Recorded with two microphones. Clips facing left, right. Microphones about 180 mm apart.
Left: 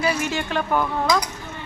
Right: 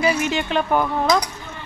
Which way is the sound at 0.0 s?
20° right (ahead or behind).